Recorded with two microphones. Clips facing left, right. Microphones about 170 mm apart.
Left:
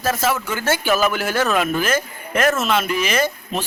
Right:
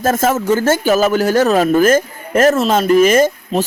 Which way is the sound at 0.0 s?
50° right (ahead or behind).